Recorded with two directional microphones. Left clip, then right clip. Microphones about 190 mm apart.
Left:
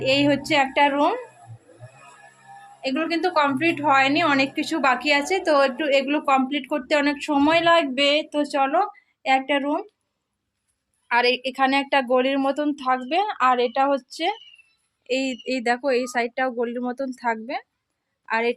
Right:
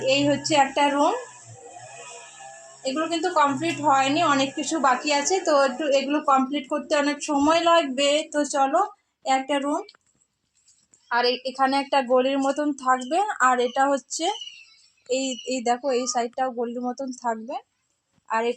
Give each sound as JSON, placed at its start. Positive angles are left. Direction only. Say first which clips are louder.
{"t": 0.0, "sound": "a woman's voice", "louder": "left 1 dB", "side_deg": 10}
{"t": 2.8, "sound": "speech", "louder": "left 2 dB", "side_deg": 10}
{"t": 5.2, "sound": "a woman's voice", "louder": "left 1 dB", "side_deg": 30}
{"t": 6.5, "sound": "speech", "louder": "left 2 dB", "side_deg": 5}
{"t": 11.1, "sound": "a woman's voice", "louder": "left 3 dB", "side_deg": 10}
{"t": 15.0, "sound": "speech", "louder": "left 1 dB", "side_deg": 15}
{"t": 16.9, "sound": "speech", "louder": "left 3 dB", "side_deg": 35}
{"t": 17.2, "sound": "a woman's voice", "louder": "left 2 dB", "side_deg": 15}